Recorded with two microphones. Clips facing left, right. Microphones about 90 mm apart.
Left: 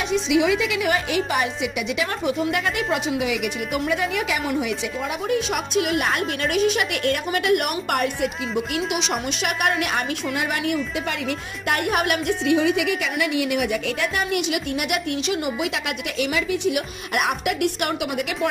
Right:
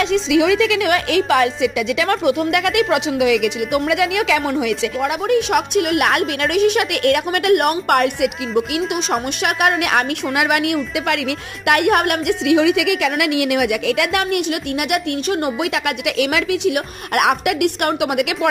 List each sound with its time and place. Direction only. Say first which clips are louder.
0.0 s a woman's voice: right 5 dB; 90° right; by 8.3 s 60° right (ahead or behind)
9.4 s a woman's voice: right 5 dB; 60° right (ahead or behind)
12.4 s a woman's voice: right 5 dB; 90° right
14.5 s a woman's voice: right 4 dB; 55° right (ahead or behind); by 16.7 s 90° right
16.7 s speech: right 5 dB; 60° right (ahead or behind)